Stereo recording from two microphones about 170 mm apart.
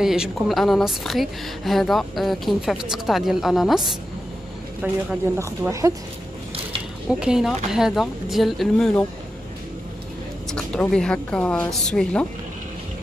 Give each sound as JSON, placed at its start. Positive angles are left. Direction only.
{"t": 0.0, "sound": "a woman's voice", "side_deg": -5}
{"t": 4.8, "sound": "speech", "side_deg": -10}
{"t": 7.1, "sound": "a woman's voice", "side_deg": -5}
{"t": 10.5, "sound": "a woman's voice", "side_deg": 5}